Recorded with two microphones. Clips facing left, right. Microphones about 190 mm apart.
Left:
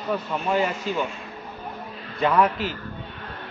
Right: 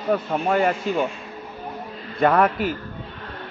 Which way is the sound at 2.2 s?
50° right (ahead or behind).